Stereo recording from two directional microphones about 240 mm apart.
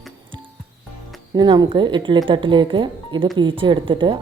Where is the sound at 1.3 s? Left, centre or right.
Centre.